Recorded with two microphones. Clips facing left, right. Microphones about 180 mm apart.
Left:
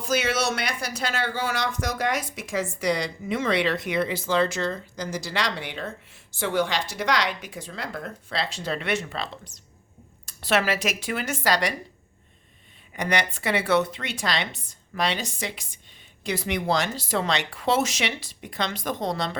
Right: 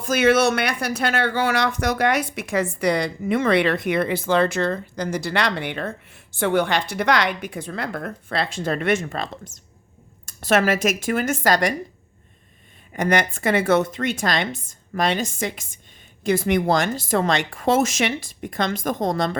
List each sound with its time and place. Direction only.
0.0 s speech: 55° right (ahead or behind)
12.9 s speech: 50° right (ahead or behind)